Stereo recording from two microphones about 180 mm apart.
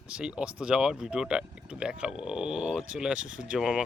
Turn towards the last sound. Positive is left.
turn(degrees=-5)  # may be behind; listen again after turning